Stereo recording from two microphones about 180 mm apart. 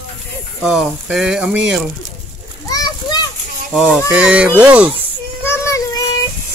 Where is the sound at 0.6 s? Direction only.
5° right (ahead or behind).